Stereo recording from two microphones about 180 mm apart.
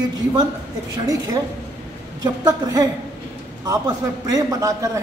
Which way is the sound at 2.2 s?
20° right (ahead or behind).